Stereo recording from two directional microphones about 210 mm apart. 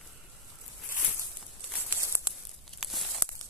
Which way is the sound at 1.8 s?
10° right (ahead or behind).